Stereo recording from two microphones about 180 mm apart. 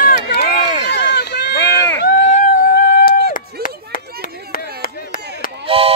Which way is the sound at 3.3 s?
50° left (ahead or behind).